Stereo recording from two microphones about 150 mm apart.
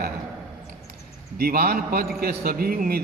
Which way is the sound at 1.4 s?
90° right.